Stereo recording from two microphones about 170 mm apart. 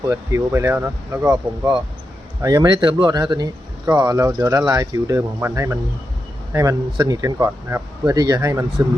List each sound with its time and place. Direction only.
0.1 s speech: 15° right (ahead or behind)